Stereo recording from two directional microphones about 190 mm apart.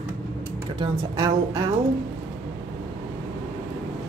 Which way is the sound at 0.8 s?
20° right (ahead or behind).